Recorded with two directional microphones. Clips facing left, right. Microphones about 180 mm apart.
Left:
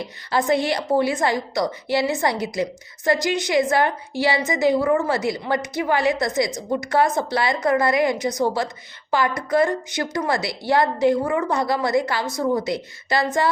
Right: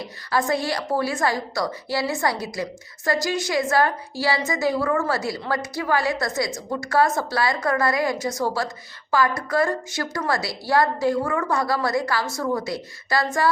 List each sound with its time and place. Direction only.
0.3 s a woman's voice: 20° left (ahead or behind)